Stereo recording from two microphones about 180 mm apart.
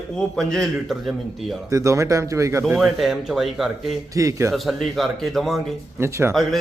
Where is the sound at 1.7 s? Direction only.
15° right (ahead or behind).